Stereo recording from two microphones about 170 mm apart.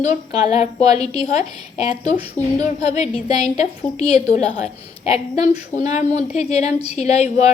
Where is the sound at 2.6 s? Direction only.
40° left (ahead or behind).